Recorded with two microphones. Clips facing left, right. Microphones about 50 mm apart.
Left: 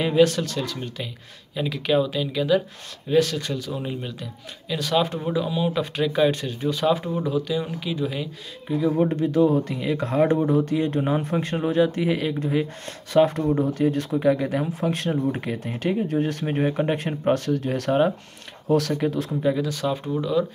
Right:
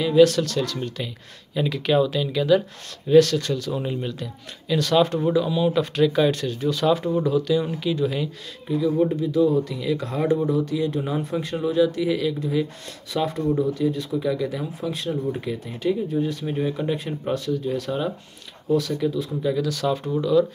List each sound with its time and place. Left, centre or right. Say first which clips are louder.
0.1 s speech: right 5 dB; left; by 2.6 s centre
3.2 s speech: right 5 dB; centre
3.7 s speech: right 3 dB; centre
8.6 s speech: even; left
9.1 s speech: even; left
16.1 s speech: left 1 dB; left
18.7 s speech: left 1 dB; left
19.4 s speech: right 1 dB; left